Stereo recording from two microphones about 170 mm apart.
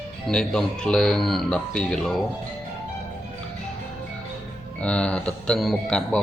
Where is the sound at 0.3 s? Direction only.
5° left (ahead or behind).